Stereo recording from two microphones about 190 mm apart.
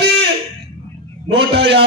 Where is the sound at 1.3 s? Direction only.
65° right (ahead or behind).